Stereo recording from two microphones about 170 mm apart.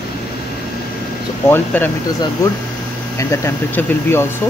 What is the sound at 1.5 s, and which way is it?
Speech, 10° left (ahead or behind).